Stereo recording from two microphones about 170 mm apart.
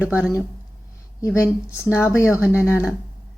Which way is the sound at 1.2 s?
15° left (ahead or behind).